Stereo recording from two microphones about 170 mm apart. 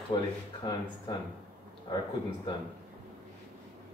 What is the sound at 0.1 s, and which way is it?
Speech, 30° left (ahead or behind).